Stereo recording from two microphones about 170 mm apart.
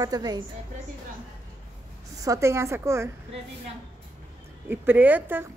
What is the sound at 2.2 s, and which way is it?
Speech, 15° right (ahead or behind).